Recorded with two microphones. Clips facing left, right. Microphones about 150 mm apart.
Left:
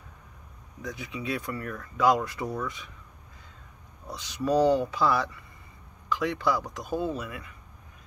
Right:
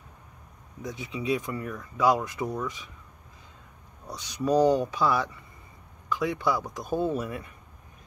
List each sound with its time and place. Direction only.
0.8 s speech: 20° right (ahead or behind)
4.3 s speech: 15° right (ahead or behind)